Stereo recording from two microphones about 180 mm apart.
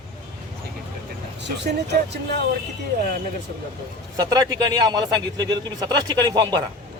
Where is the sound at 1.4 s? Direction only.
70° right (ahead or behind).